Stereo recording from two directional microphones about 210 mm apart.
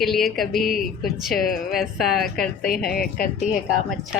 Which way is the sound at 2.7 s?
45° left (ahead or behind).